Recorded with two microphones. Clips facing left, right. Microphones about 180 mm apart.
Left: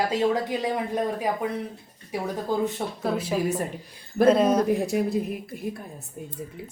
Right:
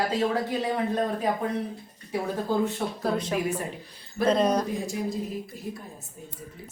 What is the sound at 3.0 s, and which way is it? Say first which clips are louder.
A woman's voice: left 2 dB; 5° left (ahead or behind).